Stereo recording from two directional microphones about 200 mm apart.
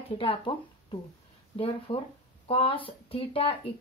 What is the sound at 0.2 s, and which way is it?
Speech, 25° left (ahead or behind).